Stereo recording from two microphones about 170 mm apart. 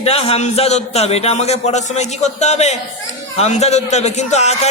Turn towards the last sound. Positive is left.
turn(degrees=40)  # may be behind; listen again after turning